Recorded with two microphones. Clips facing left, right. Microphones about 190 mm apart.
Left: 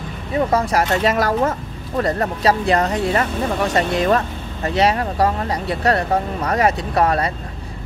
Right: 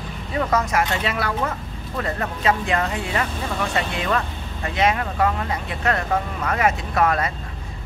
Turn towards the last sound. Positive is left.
turn(degrees=35)  # may be behind; listen again after turning